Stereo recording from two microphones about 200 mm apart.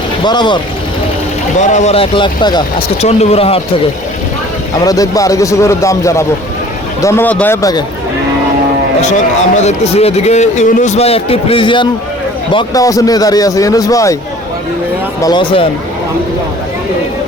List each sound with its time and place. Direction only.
0.3 s speech: 20° left (ahead or behind)
1.5 s speech: 35° left (ahead or behind); by 2.6 s 20° left (ahead or behind)
3.0 s a man's voice: 30° left (ahead or behind)
4.9 s a man's voice: 15° left (ahead or behind)
9.6 s a man's voice: 30° left (ahead or behind); by 14.2 s 15° left (ahead or behind)
15.2 s speech: 20° left (ahead or behind)